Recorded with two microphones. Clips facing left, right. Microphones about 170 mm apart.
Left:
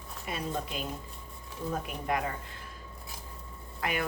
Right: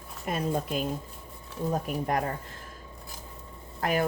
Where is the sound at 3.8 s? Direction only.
40° right (ahead or behind).